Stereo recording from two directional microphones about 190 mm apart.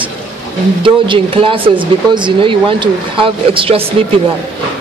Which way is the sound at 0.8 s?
25° right (ahead or behind).